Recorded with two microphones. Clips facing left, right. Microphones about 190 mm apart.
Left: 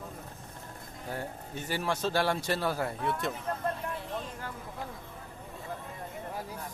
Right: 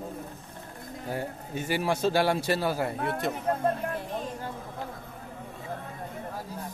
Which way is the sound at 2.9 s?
60° right (ahead or behind).